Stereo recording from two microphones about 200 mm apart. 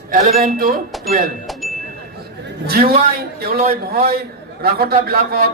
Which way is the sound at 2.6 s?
50° right (ahead or behind).